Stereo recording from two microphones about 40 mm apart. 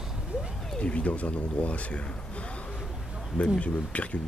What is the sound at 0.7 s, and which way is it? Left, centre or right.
Speech, left.